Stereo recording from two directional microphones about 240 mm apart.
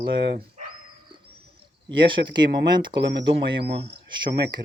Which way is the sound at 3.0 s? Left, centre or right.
Right.